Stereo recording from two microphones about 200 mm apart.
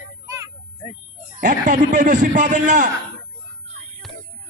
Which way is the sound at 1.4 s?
40° right (ahead or behind).